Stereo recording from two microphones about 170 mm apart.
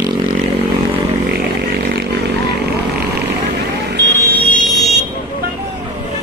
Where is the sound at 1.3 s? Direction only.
65° right (ahead or behind).